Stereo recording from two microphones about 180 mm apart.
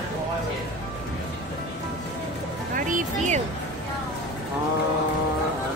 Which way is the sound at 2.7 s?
45° right (ahead or behind).